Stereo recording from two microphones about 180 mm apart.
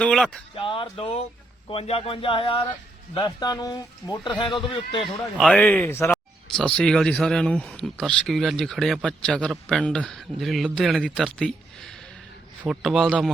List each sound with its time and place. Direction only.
0.0 s speech: 5° left (ahead or behind)
0.5 s speech: 30° left (ahead or behind)
5.4 s speech: 5° left (ahead or behind)